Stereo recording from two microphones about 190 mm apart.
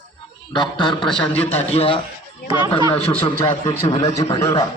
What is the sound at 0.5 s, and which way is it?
A man's voice, 25° left (ahead or behind).